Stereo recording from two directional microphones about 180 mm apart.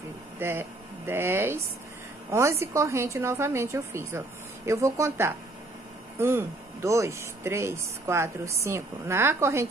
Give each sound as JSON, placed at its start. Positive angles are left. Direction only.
{"t": 0.4, "sound": "speech", "side_deg": -10}